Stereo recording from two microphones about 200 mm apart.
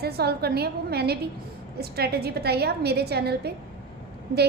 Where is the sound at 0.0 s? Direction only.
55° right (ahead or behind).